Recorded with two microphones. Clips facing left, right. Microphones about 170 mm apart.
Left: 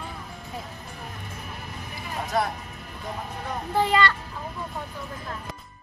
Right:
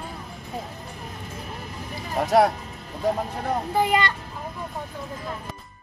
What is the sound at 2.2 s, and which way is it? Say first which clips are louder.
Speech: right 9 dB; 90° right.